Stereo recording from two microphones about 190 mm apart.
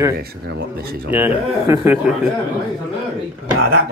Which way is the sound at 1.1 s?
10° right (ahead or behind).